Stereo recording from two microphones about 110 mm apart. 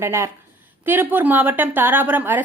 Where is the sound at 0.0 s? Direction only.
25° right (ahead or behind).